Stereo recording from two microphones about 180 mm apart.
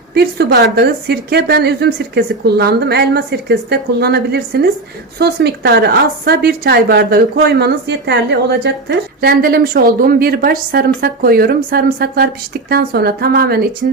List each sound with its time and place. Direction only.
0.1 s a woman's voice: 65° right (ahead or behind)